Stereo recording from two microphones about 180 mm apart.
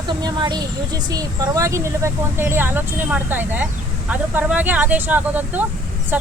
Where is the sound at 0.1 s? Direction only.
25° right (ahead or behind).